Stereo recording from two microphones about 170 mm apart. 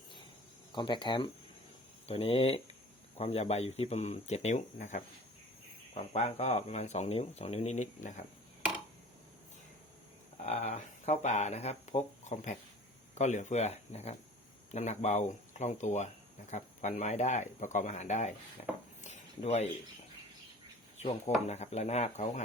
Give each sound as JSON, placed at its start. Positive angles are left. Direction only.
{"t": 0.7, "sound": "speech", "side_deg": 25}
{"t": 10.3, "sound": "speech", "side_deg": 40}
{"t": 19.0, "sound": "a sound", "side_deg": 40}
{"t": 21.0, "sound": "speech", "side_deg": 40}